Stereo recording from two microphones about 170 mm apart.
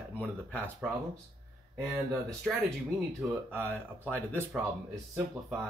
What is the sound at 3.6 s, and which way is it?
Speech, 10° left (ahead or behind).